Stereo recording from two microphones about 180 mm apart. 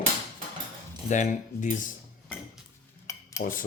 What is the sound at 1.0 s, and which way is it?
Speech, 40° left (ahead or behind).